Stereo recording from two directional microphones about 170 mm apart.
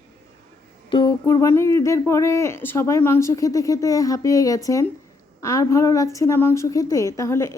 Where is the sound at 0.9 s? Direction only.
30° left (ahead or behind).